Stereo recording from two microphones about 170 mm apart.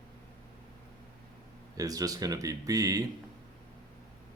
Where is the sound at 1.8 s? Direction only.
20° right (ahead or behind).